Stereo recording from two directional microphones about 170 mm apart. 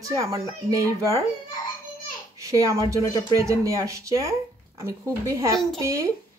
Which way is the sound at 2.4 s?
20° right (ahead or behind).